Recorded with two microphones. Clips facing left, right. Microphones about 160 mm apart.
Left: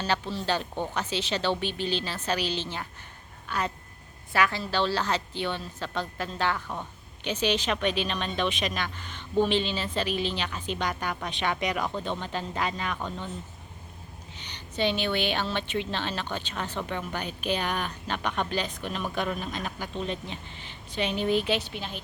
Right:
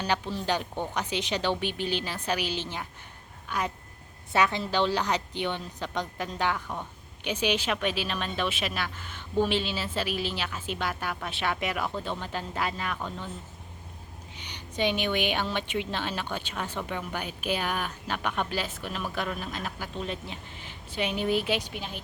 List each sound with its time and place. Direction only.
0.0 s a woman's voice: 15° right (ahead or behind)
14.3 s a woman's voice: 10° right (ahead or behind)